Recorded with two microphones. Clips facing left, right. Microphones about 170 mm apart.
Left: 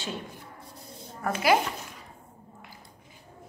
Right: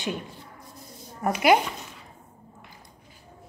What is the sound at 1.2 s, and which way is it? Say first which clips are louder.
Speech: right 4 dB; 20° right (ahead or behind).